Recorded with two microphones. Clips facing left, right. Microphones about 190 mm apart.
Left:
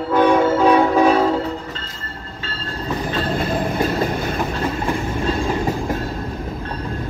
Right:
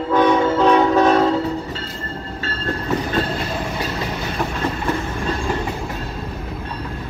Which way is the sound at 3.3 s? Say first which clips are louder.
Left 4 dB; 50° left (ahead or behind).